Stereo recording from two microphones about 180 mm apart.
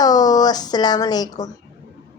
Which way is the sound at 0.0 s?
20° left (ahead or behind).